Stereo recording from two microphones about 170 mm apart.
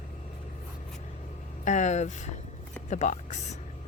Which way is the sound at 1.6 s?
45° left (ahead or behind).